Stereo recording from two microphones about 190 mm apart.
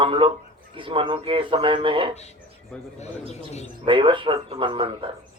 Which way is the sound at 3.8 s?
25° right (ahead or behind).